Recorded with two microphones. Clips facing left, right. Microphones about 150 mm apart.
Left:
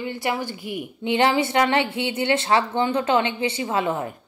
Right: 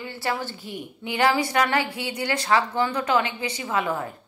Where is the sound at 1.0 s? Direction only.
25° left (ahead or behind).